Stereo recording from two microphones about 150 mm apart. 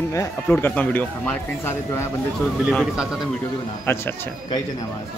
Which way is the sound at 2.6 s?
5° right (ahead or behind).